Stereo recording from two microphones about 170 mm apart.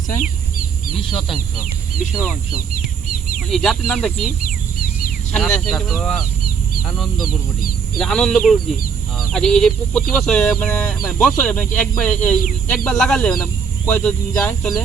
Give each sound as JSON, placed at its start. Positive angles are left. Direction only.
{"t": 0.9, "sound": "speech", "side_deg": 0}
{"t": 2.7, "sound": "bird", "side_deg": 55}
{"t": 3.5, "sound": "speech", "side_deg": 5}
{"t": 5.3, "sound": "speech", "side_deg": 5}